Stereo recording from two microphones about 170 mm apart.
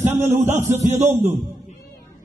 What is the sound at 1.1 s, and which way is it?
Speech, 15° right (ahead or behind).